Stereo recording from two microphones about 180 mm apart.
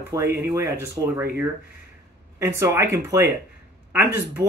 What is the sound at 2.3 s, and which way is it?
Speech, 15° right (ahead or behind).